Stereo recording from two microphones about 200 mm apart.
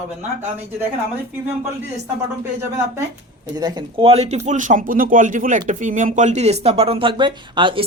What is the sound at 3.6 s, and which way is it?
Speech, 20° right (ahead or behind).